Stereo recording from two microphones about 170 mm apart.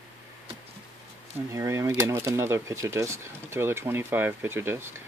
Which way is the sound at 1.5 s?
20° right (ahead or behind).